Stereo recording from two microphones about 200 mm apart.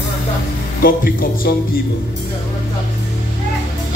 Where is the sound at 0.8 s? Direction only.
50° left (ahead or behind).